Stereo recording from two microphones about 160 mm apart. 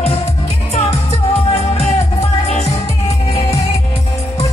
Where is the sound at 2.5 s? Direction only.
40° left (ahead or behind).